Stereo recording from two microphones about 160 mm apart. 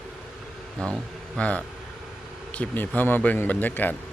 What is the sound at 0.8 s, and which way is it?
A man's voice, 5° left (ahead or behind).